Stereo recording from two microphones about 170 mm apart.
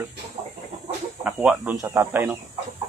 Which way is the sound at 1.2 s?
5° right (ahead or behind).